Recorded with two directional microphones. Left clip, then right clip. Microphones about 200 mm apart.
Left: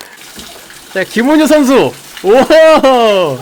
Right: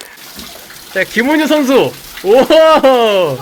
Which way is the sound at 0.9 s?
25° left (ahead or behind).